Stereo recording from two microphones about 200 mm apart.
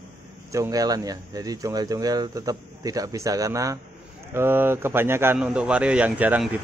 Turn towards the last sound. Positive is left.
turn(degrees=-5)  # may be behind; listen again after turning